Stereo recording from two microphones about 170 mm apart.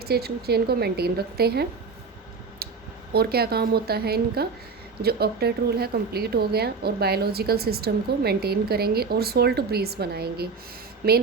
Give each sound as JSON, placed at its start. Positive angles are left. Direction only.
{"t": 0.0, "sound": "a woman's voice", "side_deg": -65}
{"t": 3.1, "sound": "a woman's voice", "side_deg": -65}